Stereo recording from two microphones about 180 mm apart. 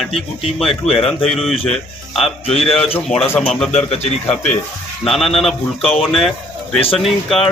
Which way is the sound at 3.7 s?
35° left (ahead or behind).